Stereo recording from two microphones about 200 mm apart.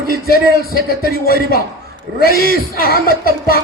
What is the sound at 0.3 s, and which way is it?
A man's voice, 50° left (ahead or behind).